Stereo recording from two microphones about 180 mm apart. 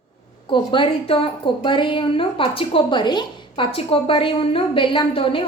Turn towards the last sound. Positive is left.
turn(degrees=30)  # may be behind; listen again after turning